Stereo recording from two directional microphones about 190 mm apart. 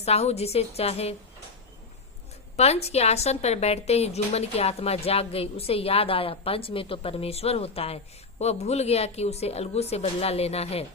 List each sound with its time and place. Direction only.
0.0 s a woman's voice: 35° left (ahead or behind)
2.6 s a woman's voice: 35° left (ahead or behind)